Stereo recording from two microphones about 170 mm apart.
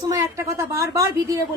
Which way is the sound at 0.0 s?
20° right (ahead or behind).